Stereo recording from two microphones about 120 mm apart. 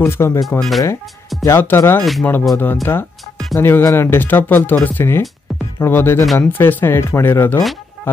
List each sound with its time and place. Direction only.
0.0 s speech: 25° left (ahead or behind)
0.6 s speech: centre (ahead or behind)
1.4 s speech: 20° left (ahead or behind)